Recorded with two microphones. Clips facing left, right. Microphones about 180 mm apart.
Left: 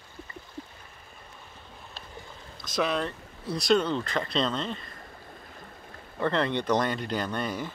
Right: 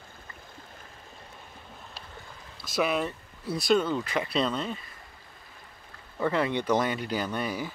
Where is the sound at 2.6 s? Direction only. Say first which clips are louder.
Right 1 dB; 5° right (ahead or behind).